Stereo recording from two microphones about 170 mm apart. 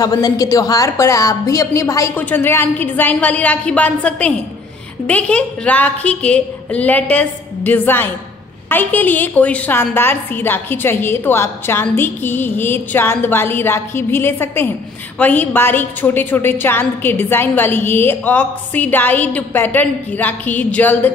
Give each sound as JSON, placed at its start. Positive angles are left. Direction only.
{"t": 0.0, "sound": "a woman's voice", "side_deg": 20}